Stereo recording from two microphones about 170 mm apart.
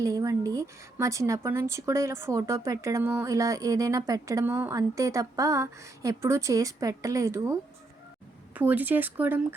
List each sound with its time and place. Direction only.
0.0 s speech: 20° right (ahead or behind)